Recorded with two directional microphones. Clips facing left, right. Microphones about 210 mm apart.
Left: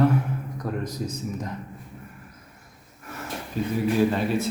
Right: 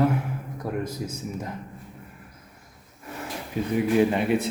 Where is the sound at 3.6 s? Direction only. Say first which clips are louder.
Even; 15° right (ahead or behind).